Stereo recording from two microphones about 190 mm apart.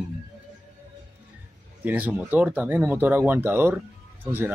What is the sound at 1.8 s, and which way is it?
Speech, 10° right (ahead or behind).